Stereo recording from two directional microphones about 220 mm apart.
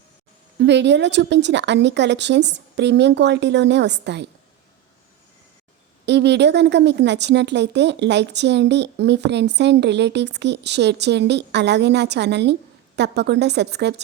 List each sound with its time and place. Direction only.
0.6 s a woman's voice: 50° right (ahead or behind)
6.1 s a woman's voice: 50° right (ahead or behind)